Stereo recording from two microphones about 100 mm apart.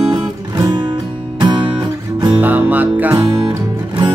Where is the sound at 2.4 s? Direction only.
15° right (ahead or behind).